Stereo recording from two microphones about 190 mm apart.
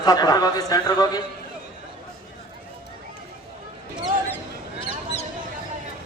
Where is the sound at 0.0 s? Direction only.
20° left (ahead or behind).